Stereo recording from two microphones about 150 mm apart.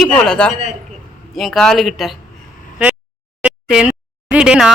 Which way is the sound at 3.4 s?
5° right (ahead or behind).